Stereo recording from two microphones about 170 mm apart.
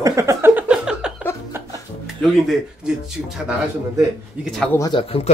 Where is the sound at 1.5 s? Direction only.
15° right (ahead or behind).